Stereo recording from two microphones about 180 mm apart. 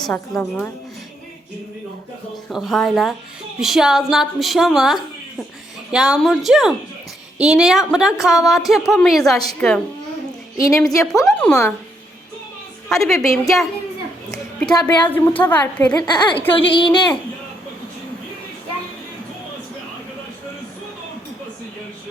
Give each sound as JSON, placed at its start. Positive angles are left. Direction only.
{"t": 0.1, "sound": "a woman's voice", "side_deg": 10}
{"t": 2.3, "sound": "speech", "side_deg": 0}
{"t": 10.6, "sound": "a woman's voice", "side_deg": 15}
{"t": 12.9, "sound": "speech", "side_deg": 0}
{"t": 14.7, "sound": "speech", "side_deg": 25}
{"t": 15.1, "sound": "a woman's voice", "side_deg": 10}